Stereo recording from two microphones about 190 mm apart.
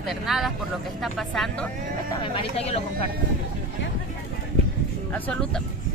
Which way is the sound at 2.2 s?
30° left (ahead or behind).